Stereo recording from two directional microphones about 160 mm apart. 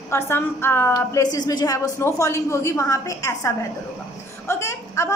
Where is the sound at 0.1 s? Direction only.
15° left (ahead or behind).